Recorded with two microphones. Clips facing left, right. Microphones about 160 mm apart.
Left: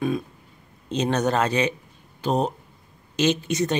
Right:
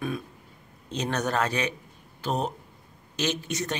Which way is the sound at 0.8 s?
25° left (ahead or behind).